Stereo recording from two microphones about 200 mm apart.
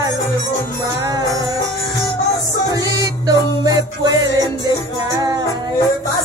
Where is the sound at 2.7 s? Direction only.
20° right (ahead or behind).